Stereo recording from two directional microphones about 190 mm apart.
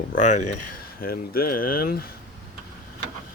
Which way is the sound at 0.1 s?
40° left (ahead or behind).